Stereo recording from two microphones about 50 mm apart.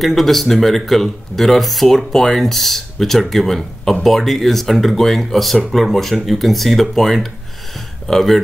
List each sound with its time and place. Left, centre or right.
0.0 s speech: centre